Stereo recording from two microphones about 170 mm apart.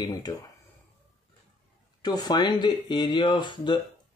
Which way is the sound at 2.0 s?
25° left (ahead or behind).